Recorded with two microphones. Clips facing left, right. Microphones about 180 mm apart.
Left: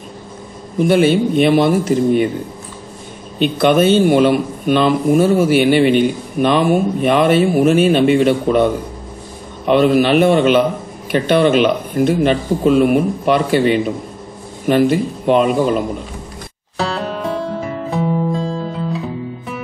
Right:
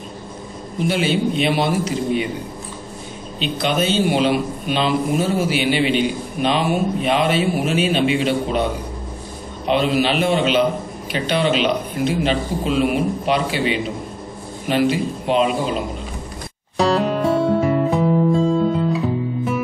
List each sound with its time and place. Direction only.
0.7 s a man's voice: 50° left (ahead or behind)
3.3 s a man's voice: 55° left (ahead or behind)
16.7 s music: centre (ahead or behind)